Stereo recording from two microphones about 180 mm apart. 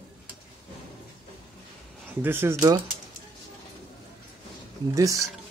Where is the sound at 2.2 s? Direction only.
10° right (ahead or behind).